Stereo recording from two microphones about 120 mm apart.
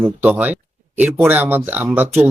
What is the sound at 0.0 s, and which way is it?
Speech, 15° right (ahead or behind).